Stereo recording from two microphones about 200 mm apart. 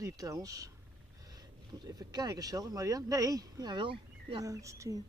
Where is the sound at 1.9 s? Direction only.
20° right (ahead or behind).